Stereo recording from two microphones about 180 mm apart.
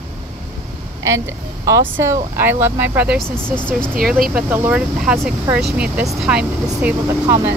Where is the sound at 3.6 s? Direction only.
5° left (ahead or behind).